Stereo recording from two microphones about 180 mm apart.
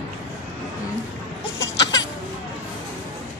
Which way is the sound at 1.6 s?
20° left (ahead or behind).